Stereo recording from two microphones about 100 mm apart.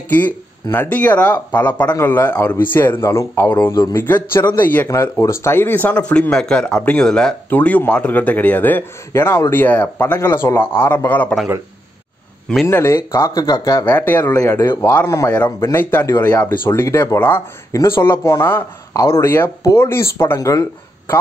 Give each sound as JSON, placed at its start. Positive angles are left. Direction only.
{"t": 0.7, "sound": "a man's voice", "side_deg": 15}
{"t": 4.8, "sound": "a man's voice", "side_deg": 25}
{"t": 12.6, "sound": "a man's voice", "side_deg": 25}
{"t": 13.8, "sound": "a man's voice", "side_deg": 15}
{"t": 20.3, "sound": "speech", "side_deg": 35}